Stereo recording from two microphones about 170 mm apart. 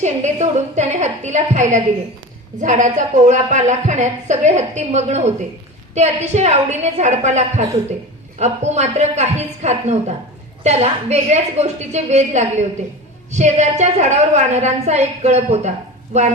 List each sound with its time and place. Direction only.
0.0 s a woman's voice: 40° right (ahead or behind)